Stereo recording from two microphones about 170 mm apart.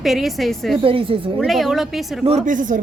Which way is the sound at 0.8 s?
30° right (ahead or behind).